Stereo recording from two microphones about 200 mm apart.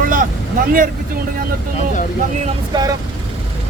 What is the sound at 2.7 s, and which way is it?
Speech, 20° right (ahead or behind).